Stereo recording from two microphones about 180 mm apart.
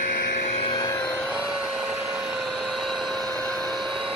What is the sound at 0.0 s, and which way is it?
Vehicle, 50° left (ahead or behind).